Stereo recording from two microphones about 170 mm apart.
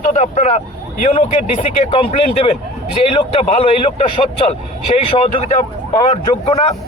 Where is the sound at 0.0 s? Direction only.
45° left (ahead or behind).